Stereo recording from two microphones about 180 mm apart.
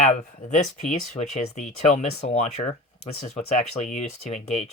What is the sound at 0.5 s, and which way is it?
Speech, 40° left (ahead or behind).